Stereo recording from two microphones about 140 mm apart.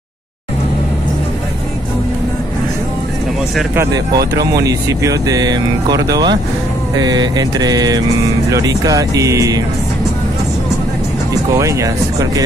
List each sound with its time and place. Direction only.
3.7 s speech: 25° right (ahead or behind)
11.5 s speech: 20° right (ahead or behind)